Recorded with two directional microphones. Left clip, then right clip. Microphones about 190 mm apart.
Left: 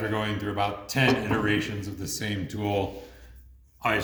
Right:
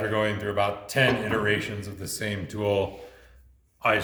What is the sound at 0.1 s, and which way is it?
Speech, 30° right (ahead or behind).